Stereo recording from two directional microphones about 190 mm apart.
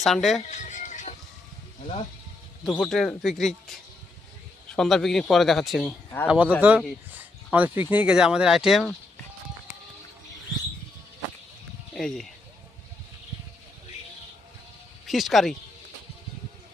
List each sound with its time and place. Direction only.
0.0 s speech: centre (ahead or behind)
0.4 s music: 40° left (ahead or behind)
2.6 s speech: 5° left (ahead or behind)
11.9 s speech: centre (ahead or behind)
15.0 s speech: centre (ahead or behind)